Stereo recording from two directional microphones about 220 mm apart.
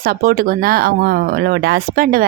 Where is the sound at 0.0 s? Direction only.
40° right (ahead or behind).